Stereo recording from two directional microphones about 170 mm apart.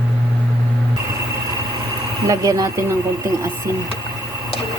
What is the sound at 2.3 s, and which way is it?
Speech, 20° right (ahead or behind).